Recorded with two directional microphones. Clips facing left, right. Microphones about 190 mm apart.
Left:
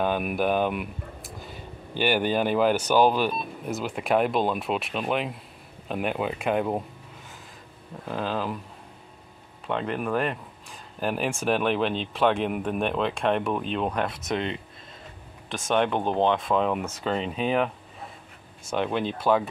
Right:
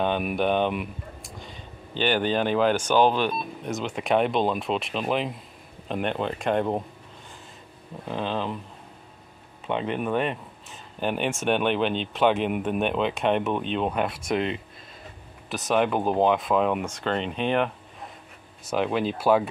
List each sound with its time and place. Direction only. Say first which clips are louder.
0.0 s speech: right 1 dB; centre (ahead or behind)
8.0 s speech: even; 5° left (ahead or behind)
9.7 s speech: right 1 dB; centre (ahead or behind)
18.7 s speech: right 2 dB; centre (ahead or behind)